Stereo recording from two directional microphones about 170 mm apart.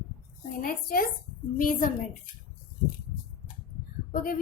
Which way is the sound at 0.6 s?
55° left (ahead or behind).